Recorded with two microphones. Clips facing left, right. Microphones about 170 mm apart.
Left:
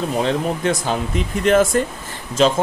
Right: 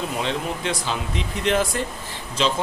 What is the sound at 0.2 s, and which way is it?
A man's voice, 45° left (ahead or behind).